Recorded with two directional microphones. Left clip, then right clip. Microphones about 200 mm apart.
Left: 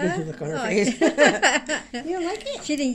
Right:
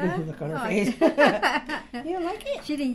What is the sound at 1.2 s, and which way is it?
Speech, centre (ahead or behind).